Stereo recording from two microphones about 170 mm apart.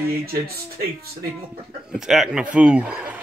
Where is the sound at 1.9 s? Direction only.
Centre (ahead or behind).